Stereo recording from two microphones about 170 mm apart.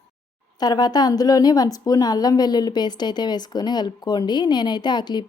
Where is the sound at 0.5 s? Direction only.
25° left (ahead or behind).